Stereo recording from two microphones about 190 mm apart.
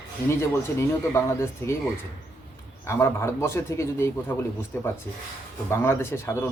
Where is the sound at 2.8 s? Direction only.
15° left (ahead or behind).